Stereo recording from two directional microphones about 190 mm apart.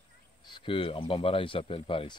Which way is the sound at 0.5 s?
25° left (ahead or behind).